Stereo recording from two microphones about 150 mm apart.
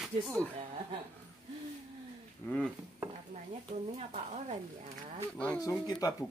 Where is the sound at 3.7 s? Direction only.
45° right (ahead or behind).